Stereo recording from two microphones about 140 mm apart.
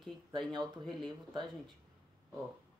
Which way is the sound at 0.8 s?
35° right (ahead or behind).